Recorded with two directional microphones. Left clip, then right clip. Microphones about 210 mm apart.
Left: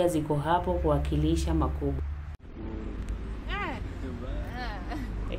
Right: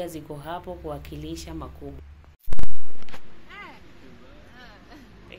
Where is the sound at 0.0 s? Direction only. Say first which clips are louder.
Left 8 dB; 5° right (ahead or behind).